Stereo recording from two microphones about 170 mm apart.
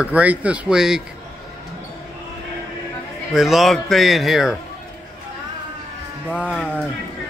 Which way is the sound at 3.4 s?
Centre (ahead or behind).